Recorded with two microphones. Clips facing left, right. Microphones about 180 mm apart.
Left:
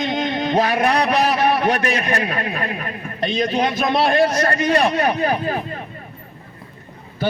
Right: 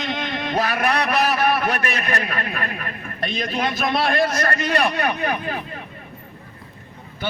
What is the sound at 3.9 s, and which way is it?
Speech, 25° left (ahead or behind).